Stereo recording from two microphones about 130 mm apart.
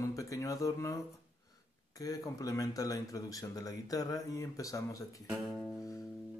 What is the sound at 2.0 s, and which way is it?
Speech, 25° left (ahead or behind).